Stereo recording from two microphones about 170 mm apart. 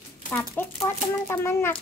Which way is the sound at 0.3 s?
10° left (ahead or behind).